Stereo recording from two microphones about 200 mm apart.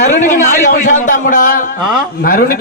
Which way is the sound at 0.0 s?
35° left (ahead or behind).